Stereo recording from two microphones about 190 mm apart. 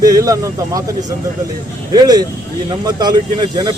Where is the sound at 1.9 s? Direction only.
20° right (ahead or behind).